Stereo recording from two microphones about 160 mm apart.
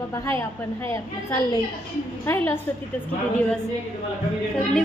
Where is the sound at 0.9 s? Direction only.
20° left (ahead or behind).